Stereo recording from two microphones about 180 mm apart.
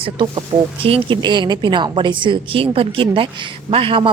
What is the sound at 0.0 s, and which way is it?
Speech, 25° right (ahead or behind).